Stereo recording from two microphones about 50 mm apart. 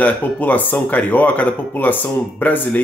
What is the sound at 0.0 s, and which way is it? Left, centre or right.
Speech, left.